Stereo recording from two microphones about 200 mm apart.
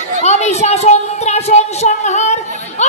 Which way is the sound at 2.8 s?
35° left (ahead or behind).